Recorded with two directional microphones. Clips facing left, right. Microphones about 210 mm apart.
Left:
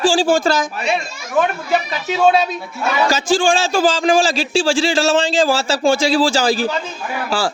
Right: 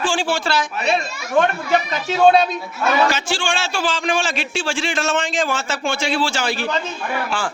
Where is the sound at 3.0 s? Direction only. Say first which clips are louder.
Left 7 dB; 35° left (ahead or behind).